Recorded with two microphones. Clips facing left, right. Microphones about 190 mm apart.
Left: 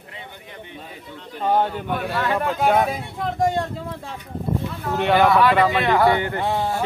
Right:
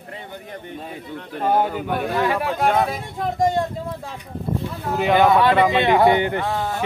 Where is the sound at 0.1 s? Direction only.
45° right (ahead or behind).